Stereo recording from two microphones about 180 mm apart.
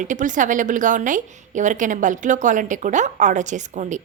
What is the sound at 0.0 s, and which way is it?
A woman's voice, 45° right (ahead or behind).